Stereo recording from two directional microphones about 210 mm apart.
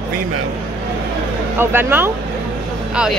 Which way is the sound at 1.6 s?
10° right (ahead or behind).